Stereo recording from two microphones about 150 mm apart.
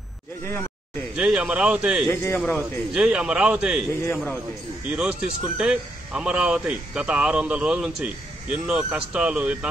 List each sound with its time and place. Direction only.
0.5 s speech: 15° left (ahead or behind)
1.1 s speech: 5° right (ahead or behind)
2.0 s speech: 15° left (ahead or behind)
2.9 s speech: 5° right (ahead or behind)
3.9 s speech: 20° left (ahead or behind)
4.9 s speech: 5° right (ahead or behind)